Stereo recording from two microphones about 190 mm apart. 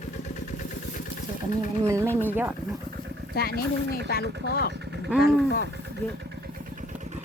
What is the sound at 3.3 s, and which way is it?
Speech, 55° left (ahead or behind).